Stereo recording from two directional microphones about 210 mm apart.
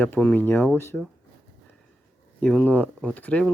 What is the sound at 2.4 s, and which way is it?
Speech, 5° left (ahead or behind).